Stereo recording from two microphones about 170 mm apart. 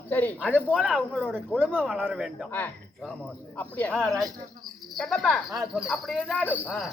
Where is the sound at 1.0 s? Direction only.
5° right (ahead or behind).